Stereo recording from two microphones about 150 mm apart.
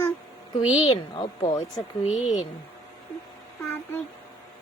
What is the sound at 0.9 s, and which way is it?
Speech, 30° left (ahead or behind).